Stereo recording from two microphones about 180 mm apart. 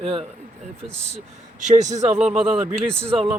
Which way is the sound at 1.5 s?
45° right (ahead or behind).